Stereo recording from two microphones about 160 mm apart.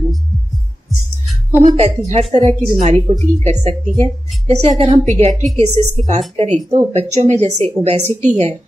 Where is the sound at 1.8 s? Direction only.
40° right (ahead or behind).